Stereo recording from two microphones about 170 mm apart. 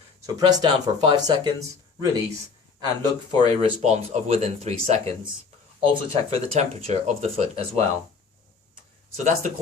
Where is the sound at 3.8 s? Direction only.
40° right (ahead or behind).